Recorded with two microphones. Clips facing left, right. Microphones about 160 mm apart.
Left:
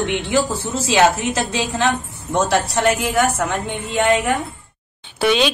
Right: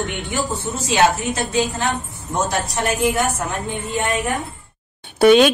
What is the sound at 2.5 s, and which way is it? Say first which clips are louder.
A woman's voice: left 5 dB; 75° left (ahead or behind).